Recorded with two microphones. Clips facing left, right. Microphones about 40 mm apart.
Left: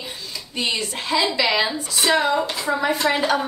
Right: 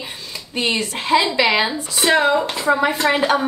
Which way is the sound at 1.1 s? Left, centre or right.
Right.